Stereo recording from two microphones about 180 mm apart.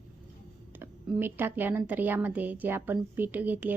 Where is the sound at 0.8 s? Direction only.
10° right (ahead or behind).